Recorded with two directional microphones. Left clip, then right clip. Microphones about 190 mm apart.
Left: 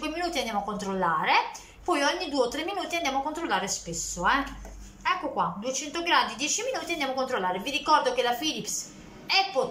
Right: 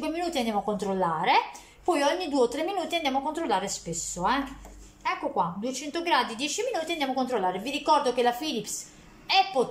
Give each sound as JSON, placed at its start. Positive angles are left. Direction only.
{"t": 0.0, "sound": "a woman's voice", "side_deg": -20}